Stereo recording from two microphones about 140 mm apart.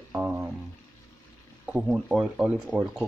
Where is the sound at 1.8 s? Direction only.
5° right (ahead or behind).